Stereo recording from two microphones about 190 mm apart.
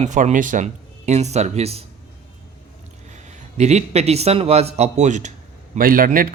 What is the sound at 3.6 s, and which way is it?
Speech, 35° right (ahead or behind).